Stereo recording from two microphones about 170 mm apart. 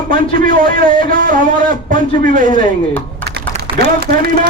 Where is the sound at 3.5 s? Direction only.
40° right (ahead or behind).